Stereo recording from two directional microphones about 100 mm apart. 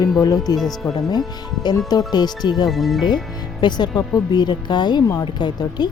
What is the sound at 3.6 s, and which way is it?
A woman's voice, 45° left (ahead or behind).